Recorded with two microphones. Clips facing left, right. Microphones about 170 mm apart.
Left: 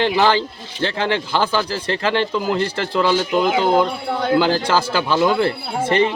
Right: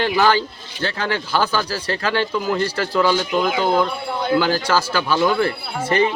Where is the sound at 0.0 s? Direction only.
25° left (ahead or behind).